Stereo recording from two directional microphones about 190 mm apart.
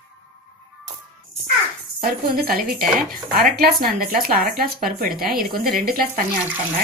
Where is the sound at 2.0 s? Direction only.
50° right (ahead or behind).